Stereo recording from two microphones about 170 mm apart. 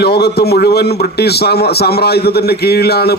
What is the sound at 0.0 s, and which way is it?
A man's voice, 70° left (ahead or behind).